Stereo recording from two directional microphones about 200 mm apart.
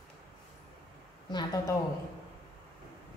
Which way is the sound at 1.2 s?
20° left (ahead or behind).